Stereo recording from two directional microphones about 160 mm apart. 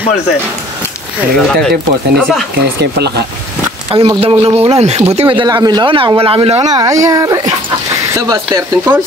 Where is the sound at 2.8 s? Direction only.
90° right.